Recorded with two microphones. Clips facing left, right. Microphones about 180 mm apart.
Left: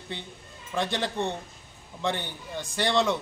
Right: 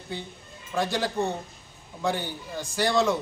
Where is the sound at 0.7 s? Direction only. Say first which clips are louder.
Right 2 dB; 5° right (ahead or behind).